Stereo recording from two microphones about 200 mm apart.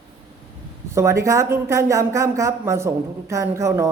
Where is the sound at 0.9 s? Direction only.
15° right (ahead or behind).